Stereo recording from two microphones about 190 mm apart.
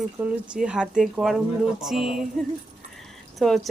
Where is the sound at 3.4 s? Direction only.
Centre (ahead or behind).